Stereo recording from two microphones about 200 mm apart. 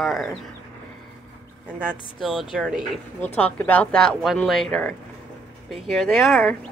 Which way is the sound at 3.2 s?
10° left (ahead or behind).